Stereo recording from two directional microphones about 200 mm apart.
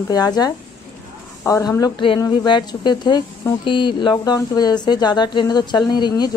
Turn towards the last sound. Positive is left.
turn(degrees=20)  # may be behind; listen again after turning